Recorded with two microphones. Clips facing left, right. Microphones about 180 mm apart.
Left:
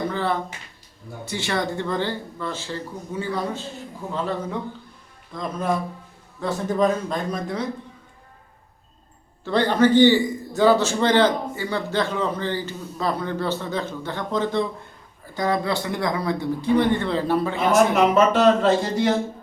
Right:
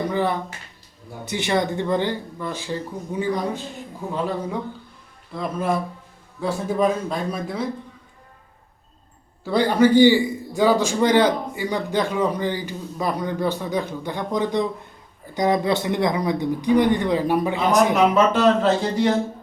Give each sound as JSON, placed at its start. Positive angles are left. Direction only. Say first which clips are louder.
{"t": 0.1, "sound": "a sound", "louder": "right 2 dB", "side_deg": -15}
{"t": 1.2, "sound": "a man's voice", "louder": "right 3 dB", "side_deg": -20}
{"t": 9.4, "sound": "a man's voice", "louder": "right 1 dB", "side_deg": -10}
{"t": 18.3, "sound": "speech", "louder": "left 1 dB", "side_deg": 0}